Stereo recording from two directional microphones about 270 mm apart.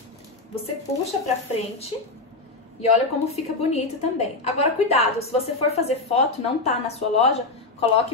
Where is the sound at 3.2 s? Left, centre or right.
Left.